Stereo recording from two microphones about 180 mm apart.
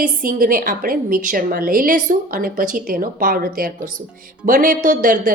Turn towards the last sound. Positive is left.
turn(degrees=-45)  # may be behind; listen again after turning